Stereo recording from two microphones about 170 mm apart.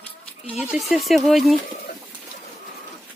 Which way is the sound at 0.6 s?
Centre (ahead or behind).